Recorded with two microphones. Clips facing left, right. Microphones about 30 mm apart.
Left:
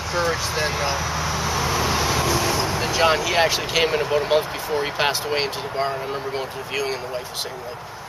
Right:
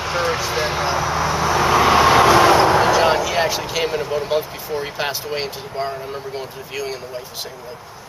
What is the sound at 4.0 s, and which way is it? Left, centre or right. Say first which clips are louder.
Speech: left 1 dB; left.